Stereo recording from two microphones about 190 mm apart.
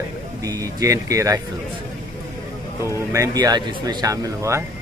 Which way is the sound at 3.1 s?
15° right (ahead or behind).